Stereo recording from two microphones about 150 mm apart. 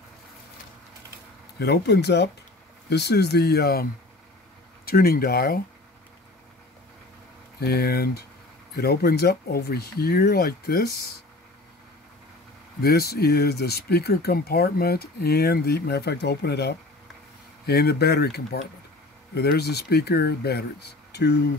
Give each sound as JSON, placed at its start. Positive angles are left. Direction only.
{"t": 1.6, "sound": "speech", "side_deg": 90}
{"t": 4.8, "sound": "speech", "side_deg": 90}
{"t": 7.6, "sound": "speech", "side_deg": 90}
{"t": 12.8, "sound": "speech", "side_deg": 90}
{"t": 21.1, "sound": "a sound", "side_deg": 90}